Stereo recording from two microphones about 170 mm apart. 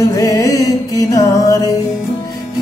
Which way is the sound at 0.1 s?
20° left (ahead or behind).